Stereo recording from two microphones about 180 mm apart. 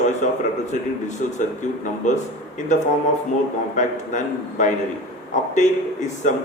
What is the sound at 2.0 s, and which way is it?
A man's voice, 40° left (ahead or behind).